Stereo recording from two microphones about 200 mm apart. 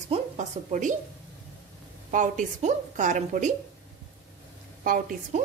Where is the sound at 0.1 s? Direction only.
35° right (ahead or behind).